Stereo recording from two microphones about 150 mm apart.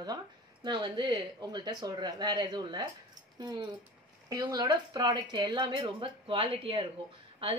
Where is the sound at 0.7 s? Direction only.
30° right (ahead or behind).